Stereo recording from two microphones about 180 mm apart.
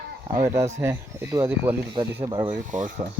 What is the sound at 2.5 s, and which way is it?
Speech, 45° right (ahead or behind).